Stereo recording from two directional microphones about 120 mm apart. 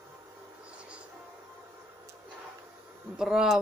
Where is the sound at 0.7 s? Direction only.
10° right (ahead or behind).